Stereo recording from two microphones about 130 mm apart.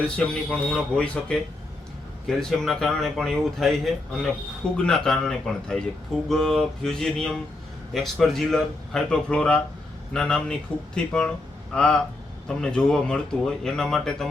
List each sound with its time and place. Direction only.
0.5 s speech: 5° left (ahead or behind)